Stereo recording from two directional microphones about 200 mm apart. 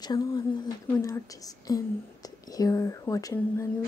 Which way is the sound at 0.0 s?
20° left (ahead or behind).